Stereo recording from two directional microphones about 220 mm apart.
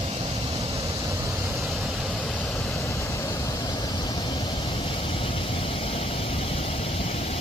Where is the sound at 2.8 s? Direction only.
10° left (ahead or behind).